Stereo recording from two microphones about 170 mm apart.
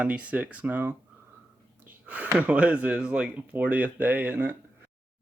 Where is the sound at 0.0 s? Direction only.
10° right (ahead or behind).